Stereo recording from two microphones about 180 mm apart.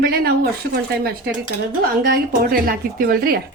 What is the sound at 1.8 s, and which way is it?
Speech, 55° right (ahead or behind).